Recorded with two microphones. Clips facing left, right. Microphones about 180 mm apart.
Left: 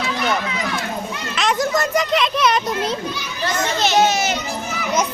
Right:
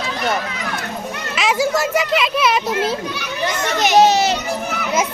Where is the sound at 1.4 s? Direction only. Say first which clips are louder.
Right 2 dB; 5° right (ahead or behind).